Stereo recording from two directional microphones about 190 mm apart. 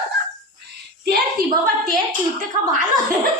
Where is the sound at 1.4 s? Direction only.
50° right (ahead or behind).